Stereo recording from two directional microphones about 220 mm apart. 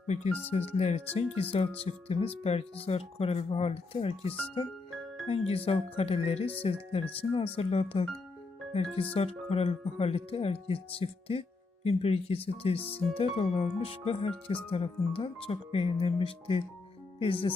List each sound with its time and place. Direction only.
0.0 s speech: 30° left (ahead or behind)
9.1 s speech: 25° left (ahead or behind)